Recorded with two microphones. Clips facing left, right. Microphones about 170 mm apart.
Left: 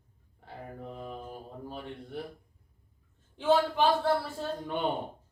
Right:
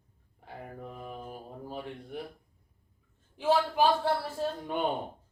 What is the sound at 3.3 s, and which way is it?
Speech, 10° right (ahead or behind).